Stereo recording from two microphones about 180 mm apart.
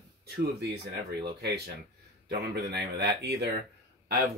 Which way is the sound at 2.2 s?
65° right (ahead or behind).